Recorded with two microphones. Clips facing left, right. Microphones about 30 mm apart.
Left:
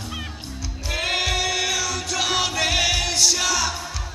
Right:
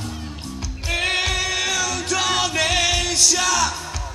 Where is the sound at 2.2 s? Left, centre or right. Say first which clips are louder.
Right 1 dB; centre.